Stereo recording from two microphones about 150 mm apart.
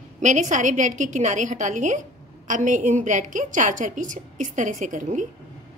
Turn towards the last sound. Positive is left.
turn(degrees=-55)  # may be behind; listen again after turning